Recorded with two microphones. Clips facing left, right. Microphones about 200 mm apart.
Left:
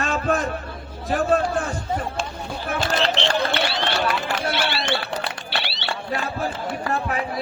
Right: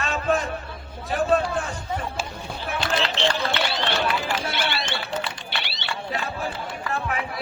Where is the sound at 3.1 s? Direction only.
60° left (ahead or behind).